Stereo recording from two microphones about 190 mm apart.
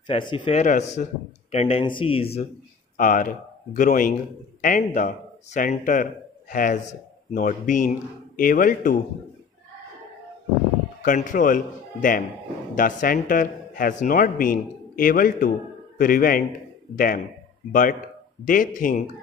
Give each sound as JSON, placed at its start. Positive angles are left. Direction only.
{"t": 0.0, "sound": "speech", "side_deg": 25}
{"t": 3.0, "sound": "a man's voice", "side_deg": 45}
{"t": 11.0, "sound": "a man's voice", "side_deg": 45}
{"t": 18.4, "sound": "a man's voice", "side_deg": 45}